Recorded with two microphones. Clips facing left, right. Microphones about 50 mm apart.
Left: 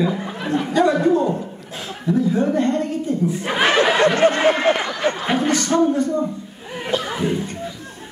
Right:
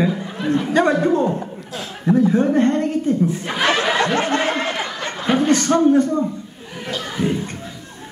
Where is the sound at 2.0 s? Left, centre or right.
Right.